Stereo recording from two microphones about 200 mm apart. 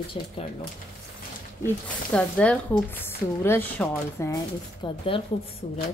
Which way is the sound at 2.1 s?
5° left (ahead or behind).